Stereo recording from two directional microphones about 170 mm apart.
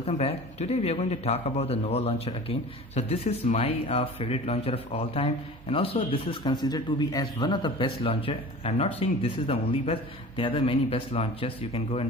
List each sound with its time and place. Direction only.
0.0 s a man's voice: 35° left (ahead or behind)